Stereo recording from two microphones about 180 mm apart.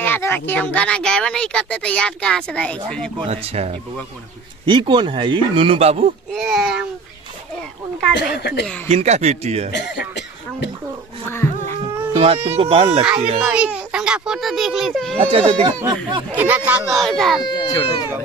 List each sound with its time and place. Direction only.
0.0 s speech: 10° left (ahead or behind)
3.3 s speech: 35° right (ahead or behind)
6.3 s speech: centre (ahead or behind)
8.1 s a woman's voice: 70° left (ahead or behind)
8.8 s speech: 40° right (ahead or behind)
9.7 s cough: 75° left (ahead or behind)
11.2 s a sound: 15° left (ahead or behind)
12.1 s a sound: 30° right (ahead or behind)
12.4 s speech: 30° right (ahead or behind)
13.4 s speech: 5° right (ahead or behind)
15.1 s speech: 30° right (ahead or behind)
16.3 s speech: 10° right (ahead or behind)
17.0 s speech: centre (ahead or behind)
17.4 s speech: 25° left (ahead or behind)